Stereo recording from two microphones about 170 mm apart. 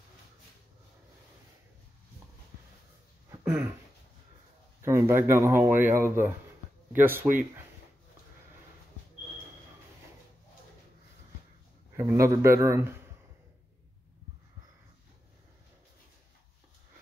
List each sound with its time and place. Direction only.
3.3 s a sound: 15° right (ahead or behind)
4.8 s speech: 15° right (ahead or behind)
12.0 s speech: 20° right (ahead or behind)